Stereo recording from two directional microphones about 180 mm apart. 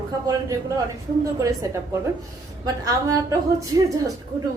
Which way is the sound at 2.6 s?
20° right (ahead or behind).